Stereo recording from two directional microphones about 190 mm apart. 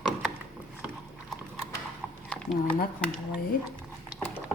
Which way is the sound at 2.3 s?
5° left (ahead or behind).